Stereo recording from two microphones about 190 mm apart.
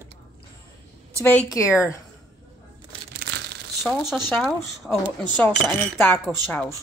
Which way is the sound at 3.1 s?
60° right (ahead or behind).